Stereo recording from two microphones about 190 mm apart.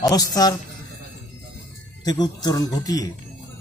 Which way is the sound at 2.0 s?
20° left (ahead or behind).